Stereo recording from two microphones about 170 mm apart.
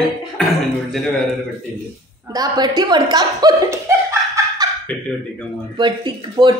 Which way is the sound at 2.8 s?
25° right (ahead or behind).